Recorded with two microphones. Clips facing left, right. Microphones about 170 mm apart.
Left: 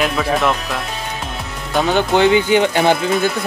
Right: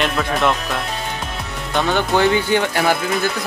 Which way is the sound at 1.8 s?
15° left (ahead or behind).